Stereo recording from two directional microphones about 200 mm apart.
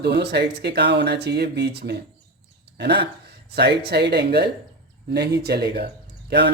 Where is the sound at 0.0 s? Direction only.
55° right (ahead or behind).